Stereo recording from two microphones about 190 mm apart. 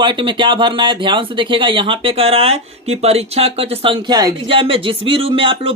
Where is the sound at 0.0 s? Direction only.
25° right (ahead or behind).